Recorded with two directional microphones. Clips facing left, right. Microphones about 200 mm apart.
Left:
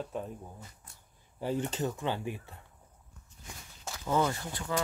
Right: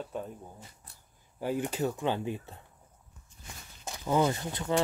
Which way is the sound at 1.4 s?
10° right (ahead or behind).